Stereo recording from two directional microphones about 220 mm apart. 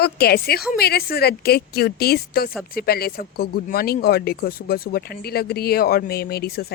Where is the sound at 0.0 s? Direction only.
45° left (ahead or behind).